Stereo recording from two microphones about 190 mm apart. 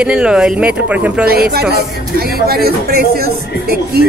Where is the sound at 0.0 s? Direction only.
5° right (ahead or behind).